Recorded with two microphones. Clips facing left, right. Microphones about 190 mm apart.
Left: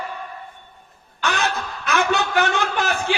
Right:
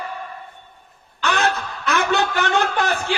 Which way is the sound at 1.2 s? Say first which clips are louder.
Right 2 dB; 60° right (ahead or behind).